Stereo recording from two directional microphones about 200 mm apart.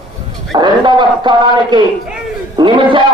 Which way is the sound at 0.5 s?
20° right (ahead or behind).